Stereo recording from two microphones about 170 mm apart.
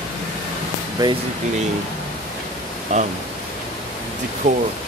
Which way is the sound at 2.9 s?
45° right (ahead or behind).